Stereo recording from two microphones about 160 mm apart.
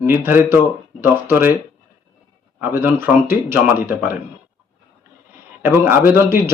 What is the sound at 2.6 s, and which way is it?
A man's voice, 15° right (ahead or behind).